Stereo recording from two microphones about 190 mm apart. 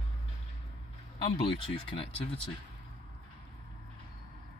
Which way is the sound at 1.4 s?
30° left (ahead or behind).